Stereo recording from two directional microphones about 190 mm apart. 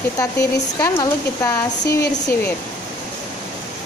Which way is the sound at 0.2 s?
15° left (ahead or behind).